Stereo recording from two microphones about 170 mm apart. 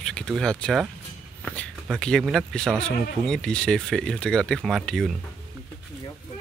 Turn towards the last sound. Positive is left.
turn(degrees=0)  # may be behind; listen again after turning